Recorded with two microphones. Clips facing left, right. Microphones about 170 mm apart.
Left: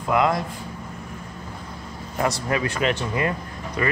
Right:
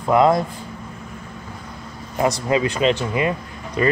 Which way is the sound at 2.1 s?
20° right (ahead or behind).